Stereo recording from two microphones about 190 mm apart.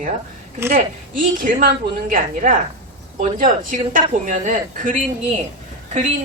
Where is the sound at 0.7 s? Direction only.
45° right (ahead or behind).